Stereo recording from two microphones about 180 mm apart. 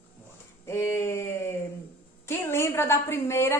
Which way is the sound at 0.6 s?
15° left (ahead or behind).